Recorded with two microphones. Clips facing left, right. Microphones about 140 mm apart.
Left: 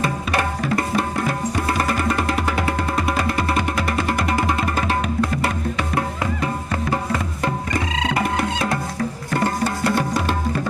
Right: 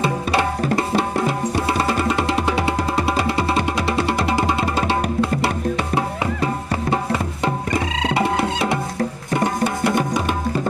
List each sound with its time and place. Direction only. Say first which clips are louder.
0.0 s music: right 2 dB; 30° right (ahead or behind)
5.9 s music: right 2 dB; 25° right (ahead or behind)